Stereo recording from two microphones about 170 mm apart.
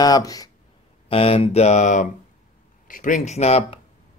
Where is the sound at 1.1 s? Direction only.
35° left (ahead or behind).